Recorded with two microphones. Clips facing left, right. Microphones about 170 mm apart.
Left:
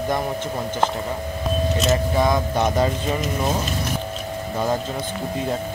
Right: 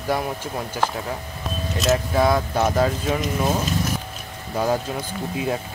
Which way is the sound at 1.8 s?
5° right (ahead or behind).